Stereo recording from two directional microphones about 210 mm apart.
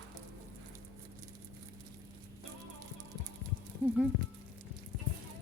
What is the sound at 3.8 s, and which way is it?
Music, 10° right (ahead or behind).